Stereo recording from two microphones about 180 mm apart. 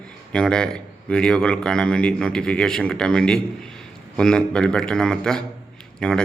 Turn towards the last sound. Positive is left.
turn(degrees=5)  # may be behind; listen again after turning